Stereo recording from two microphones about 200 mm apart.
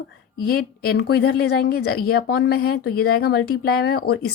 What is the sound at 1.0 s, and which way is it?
Speech, 55° left (ahead or behind).